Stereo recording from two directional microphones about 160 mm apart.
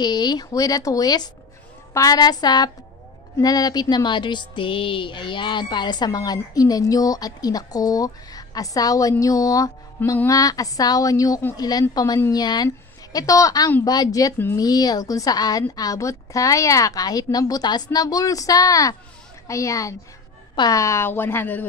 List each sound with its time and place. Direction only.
0.0 s a woman's voice: 25° left (ahead or behind)